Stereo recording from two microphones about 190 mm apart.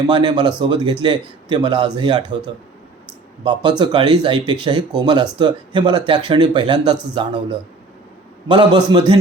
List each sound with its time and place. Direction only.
0.1 s a man's voice: 25° right (ahead or behind)
3.4 s a man's voice: 25° right (ahead or behind)